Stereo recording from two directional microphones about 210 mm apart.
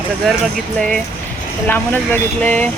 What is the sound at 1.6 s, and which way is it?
Speech, 10° left (ahead or behind).